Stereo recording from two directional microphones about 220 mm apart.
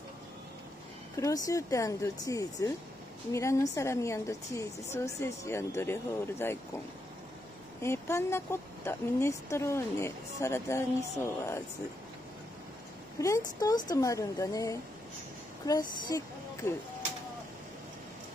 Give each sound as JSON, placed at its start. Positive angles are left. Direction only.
{"t": 1.1, "sound": "speech", "side_deg": 15}
{"t": 7.8, "sound": "speech", "side_deg": 10}
{"t": 13.2, "sound": "speech", "side_deg": 15}